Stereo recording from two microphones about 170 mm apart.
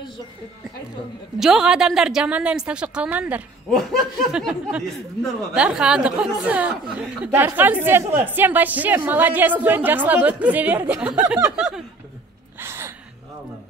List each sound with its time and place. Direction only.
1.4 s a woman's voice: 5° right (ahead or behind)
12.5 s gasp: 15° right (ahead or behind)